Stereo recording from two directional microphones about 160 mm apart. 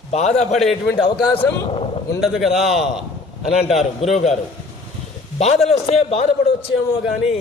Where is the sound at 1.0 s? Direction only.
30° left (ahead or behind).